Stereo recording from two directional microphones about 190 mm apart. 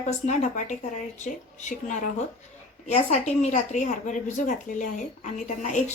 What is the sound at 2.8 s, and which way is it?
Speech, 35° left (ahead or behind).